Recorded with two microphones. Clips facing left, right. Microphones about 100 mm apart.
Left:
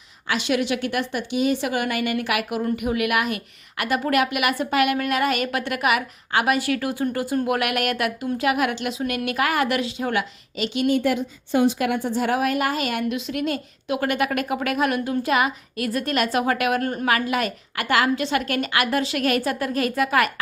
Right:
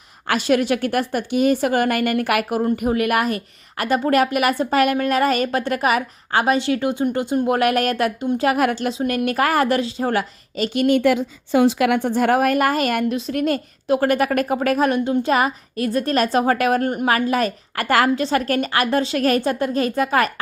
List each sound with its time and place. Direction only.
0.3 s a woman's voice: 45° right (ahead or behind)
8.4 s a woman's voice: 40° right (ahead or behind)
10.9 s a woman's voice: 90° right; by 20.3 s 35° right (ahead or behind)